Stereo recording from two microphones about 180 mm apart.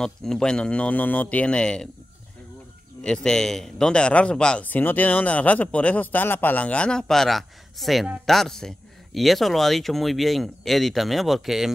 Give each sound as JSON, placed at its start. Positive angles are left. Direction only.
{"t": 0.0, "sound": "speech", "side_deg": 5}
{"t": 3.0, "sound": "speech", "side_deg": 5}